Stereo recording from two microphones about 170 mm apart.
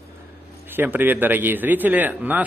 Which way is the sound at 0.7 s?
10° right (ahead or behind).